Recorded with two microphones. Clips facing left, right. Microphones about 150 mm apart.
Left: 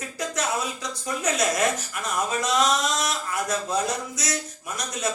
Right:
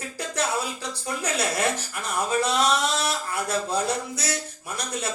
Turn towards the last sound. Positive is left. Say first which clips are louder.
# left 1 dB
turn(degrees=-30)  # may be behind; listen again after turning